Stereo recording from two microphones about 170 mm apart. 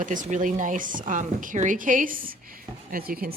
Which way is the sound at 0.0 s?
50° right (ahead or behind).